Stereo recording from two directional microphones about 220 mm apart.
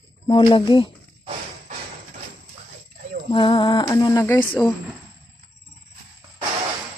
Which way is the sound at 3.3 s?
20° left (ahead or behind).